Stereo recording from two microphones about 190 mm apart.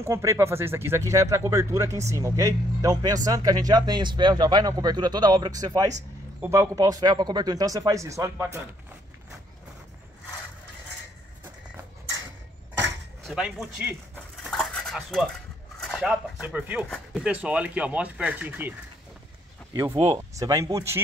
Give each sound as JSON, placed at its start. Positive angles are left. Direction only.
{"t": 0.0, "sound": "speech", "side_deg": -15}
{"t": 13.2, "sound": "a sound", "side_deg": 0}
{"t": 14.7, "sound": "dishes", "side_deg": 5}
{"t": 15.8, "sound": "speech", "side_deg": 0}